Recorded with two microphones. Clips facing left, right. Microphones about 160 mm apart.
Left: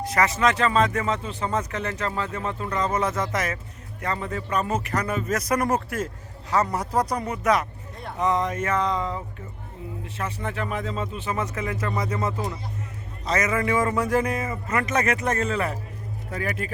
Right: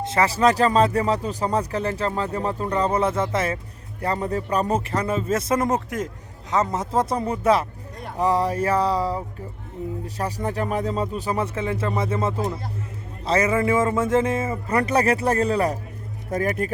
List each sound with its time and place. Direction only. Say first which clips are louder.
0.0 s speech: right 3 dB; 25° right (ahead or behind)